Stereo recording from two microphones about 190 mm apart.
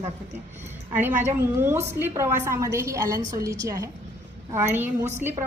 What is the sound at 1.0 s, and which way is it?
A woman's voice, 10° right (ahead or behind).